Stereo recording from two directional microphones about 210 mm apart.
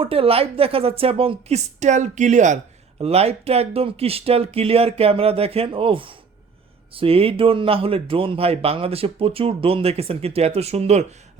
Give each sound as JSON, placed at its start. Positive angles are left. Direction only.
{"t": 0.0, "sound": "speech", "side_deg": -25}